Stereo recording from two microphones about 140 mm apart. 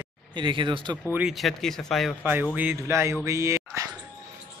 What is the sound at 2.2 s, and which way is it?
A man's voice, 10° right (ahead or behind).